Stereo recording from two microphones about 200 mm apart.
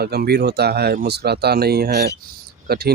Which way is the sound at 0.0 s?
55° right (ahead or behind).